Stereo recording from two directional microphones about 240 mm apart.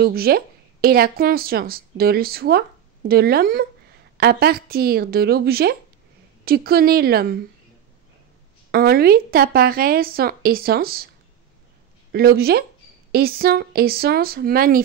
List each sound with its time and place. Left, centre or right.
0.0 s a woman's voice: right
8.7 s a woman's voice: right
12.1 s a woman's voice: right